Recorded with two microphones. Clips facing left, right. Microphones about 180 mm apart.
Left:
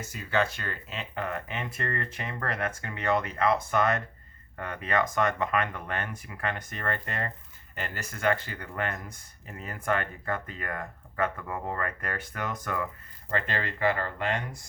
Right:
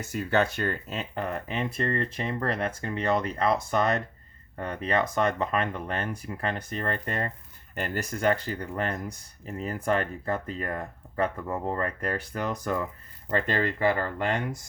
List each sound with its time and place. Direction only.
0.1 s speech: 50° right (ahead or behind)